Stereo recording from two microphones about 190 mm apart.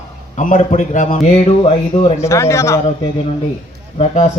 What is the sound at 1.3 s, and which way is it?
Speech, 30° left (ahead or behind).